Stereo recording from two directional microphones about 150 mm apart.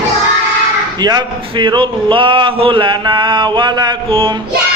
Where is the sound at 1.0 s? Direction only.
30° right (ahead or behind).